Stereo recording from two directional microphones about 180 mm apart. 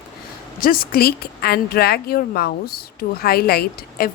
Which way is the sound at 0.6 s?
55° left (ahead or behind).